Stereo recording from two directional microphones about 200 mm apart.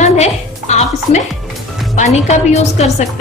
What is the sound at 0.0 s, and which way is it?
Music, 35° left (ahead or behind).